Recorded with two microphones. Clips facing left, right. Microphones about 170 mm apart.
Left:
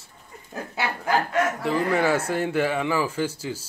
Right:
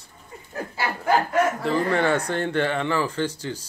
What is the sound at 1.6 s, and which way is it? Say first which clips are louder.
Speech: even; centre (ahead or behind).